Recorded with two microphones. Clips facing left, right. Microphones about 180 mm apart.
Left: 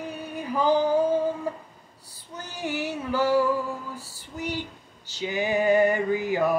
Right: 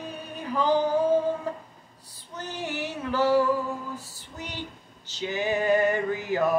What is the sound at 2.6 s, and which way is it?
Female singing, 10° left (ahead or behind).